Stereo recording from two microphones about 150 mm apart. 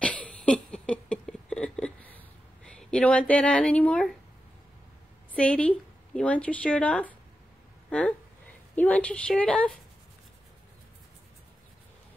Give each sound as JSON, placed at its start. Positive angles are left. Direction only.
{"t": 0.0, "sound": "a sound", "side_deg": 10}
{"t": 5.3, "sound": "a woman's voice", "side_deg": 10}
{"t": 8.7, "sound": "a woman's voice", "side_deg": 10}